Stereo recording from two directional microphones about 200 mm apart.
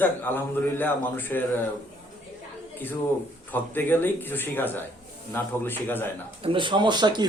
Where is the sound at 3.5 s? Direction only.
10° left (ahead or behind).